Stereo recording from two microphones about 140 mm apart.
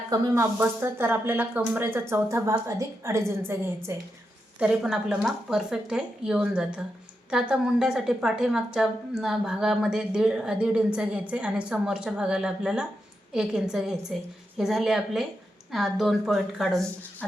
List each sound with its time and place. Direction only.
0.1 s speech: 20° right (ahead or behind)
4.6 s a woman's voice: 5° right (ahead or behind)